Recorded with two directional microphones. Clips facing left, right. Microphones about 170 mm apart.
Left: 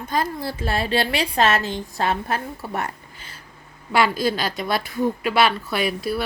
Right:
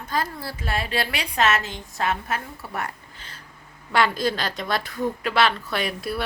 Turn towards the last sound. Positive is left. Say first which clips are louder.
# left 4 dB
turn(degrees=0)  # may be behind; listen again after turning